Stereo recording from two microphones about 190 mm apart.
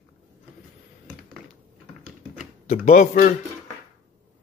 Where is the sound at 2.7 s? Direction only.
40° left (ahead or behind).